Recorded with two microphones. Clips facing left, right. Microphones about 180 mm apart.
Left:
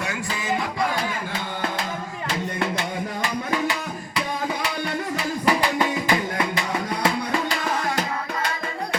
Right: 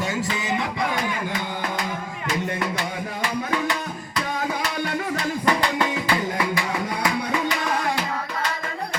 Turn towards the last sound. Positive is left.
turn(degrees=30)  # may be behind; listen again after turning